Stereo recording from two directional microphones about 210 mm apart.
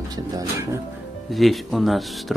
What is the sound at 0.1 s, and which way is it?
Speech, 15° right (ahead or behind).